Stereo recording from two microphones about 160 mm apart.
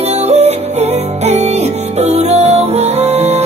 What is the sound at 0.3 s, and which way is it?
Music, 40° right (ahead or behind).